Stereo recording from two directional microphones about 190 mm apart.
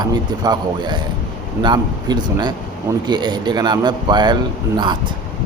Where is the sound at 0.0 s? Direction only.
20° right (ahead or behind).